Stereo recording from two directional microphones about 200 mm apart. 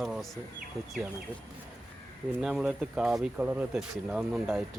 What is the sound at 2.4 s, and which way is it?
Speech, 5° right (ahead or behind).